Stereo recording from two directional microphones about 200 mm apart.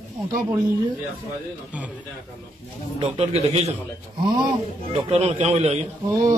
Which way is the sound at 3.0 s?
30° right (ahead or behind).